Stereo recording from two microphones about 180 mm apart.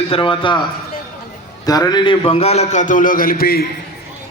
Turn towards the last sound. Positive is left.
turn(degrees=55)  # may be behind; listen again after turning